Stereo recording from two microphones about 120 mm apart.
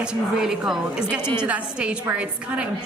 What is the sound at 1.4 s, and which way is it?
A woman's voice, 10° right (ahead or behind).